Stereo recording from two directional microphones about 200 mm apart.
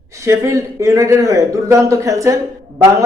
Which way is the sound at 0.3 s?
15° right (ahead or behind).